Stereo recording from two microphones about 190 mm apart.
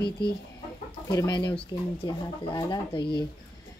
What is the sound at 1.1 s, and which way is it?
A woman's voice, 20° left (ahead or behind).